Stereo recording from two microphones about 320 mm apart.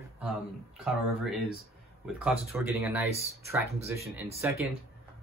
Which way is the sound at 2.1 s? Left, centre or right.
Centre.